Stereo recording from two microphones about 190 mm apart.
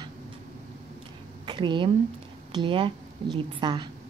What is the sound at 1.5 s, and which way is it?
Speech, 25° right (ahead or behind).